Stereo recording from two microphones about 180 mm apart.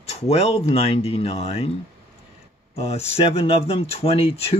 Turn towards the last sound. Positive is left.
turn(degrees=35)  # may be behind; listen again after turning